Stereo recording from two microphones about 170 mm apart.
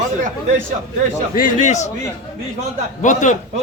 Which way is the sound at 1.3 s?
50° left (ahead or behind).